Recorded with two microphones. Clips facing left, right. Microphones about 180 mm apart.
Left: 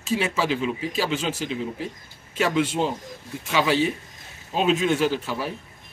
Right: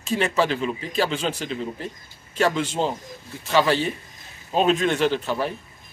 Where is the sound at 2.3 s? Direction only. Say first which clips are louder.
Even; 45° right (ahead or behind).